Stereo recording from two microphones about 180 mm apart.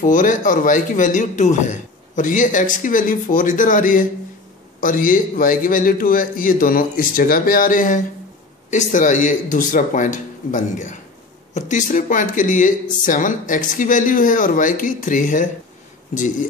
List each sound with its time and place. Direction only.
0.0 s a man's voice: 45° left (ahead or behind)